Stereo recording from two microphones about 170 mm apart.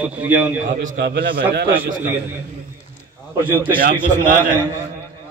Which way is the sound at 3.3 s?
10° right (ahead or behind).